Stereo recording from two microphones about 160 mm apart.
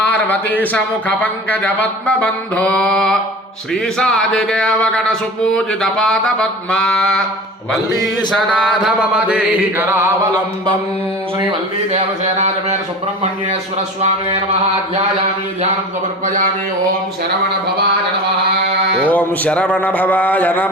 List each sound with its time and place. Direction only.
0.0 s speech: 10° left (ahead or behind)
3.9 s mantra: 5° left (ahead or behind)
8.3 s chant: centre (ahead or behind)
11.9 s speech: 45° right (ahead or behind)
19.0 s speech: 10° left (ahead or behind)